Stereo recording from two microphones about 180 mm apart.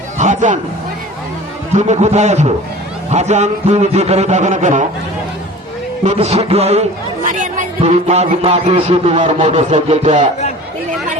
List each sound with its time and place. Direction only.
0.2 s a sound: 40° right (ahead or behind)
1.7 s a man's voice: 40° right (ahead or behind)
6.1 s a man's voice: 35° right (ahead or behind)